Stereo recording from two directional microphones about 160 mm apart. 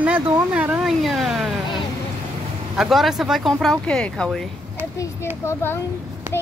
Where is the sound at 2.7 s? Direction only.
Centre (ahead or behind).